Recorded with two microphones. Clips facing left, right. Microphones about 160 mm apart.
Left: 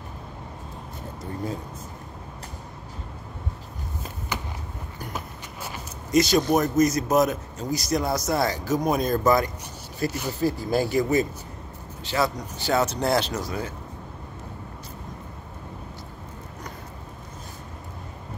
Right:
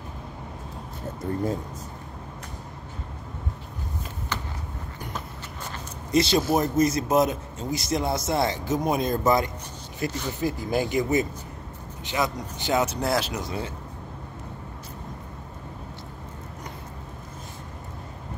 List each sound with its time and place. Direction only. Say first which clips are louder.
4.3 s a sound: left 1 dB; 10° left (ahead or behind)
6.1 s speech: left 2 dB; 25° right (ahead or behind); by 13.3 s 5° right (ahead or behind)
13.3 s speech: left 1 dB; 20° right (ahead or behind)